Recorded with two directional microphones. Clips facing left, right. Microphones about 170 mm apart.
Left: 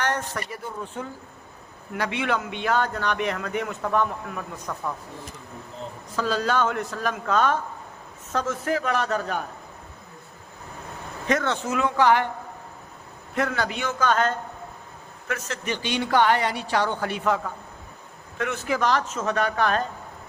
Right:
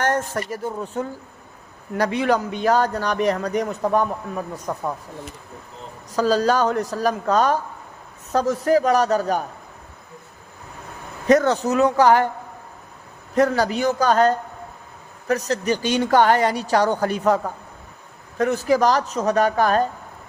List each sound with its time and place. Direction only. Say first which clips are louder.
0.0 s a man's voice: right 5 dB; 45° right (ahead or behind)
6.1 s a man's voice: right 7 dB; 40° right (ahead or behind)
11.3 s a man's voice: right 8 dB; 40° right (ahead or behind)
13.3 s a man's voice: right 8 dB; 40° right (ahead or behind)